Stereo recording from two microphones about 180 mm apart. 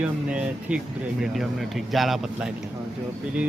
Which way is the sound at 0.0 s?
5° right (ahead or behind).